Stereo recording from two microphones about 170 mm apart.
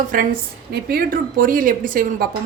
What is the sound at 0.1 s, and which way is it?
Speech, 55° right (ahead or behind).